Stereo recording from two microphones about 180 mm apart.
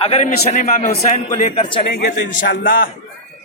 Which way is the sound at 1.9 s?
65° left (ahead or behind).